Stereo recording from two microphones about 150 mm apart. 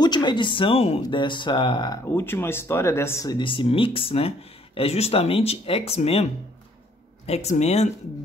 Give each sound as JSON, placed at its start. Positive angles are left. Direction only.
{"t": 0.0, "sound": "speech", "side_deg": 30}
{"t": 2.1, "sound": "speech", "side_deg": 15}
{"t": 7.2, "sound": "speech", "side_deg": 45}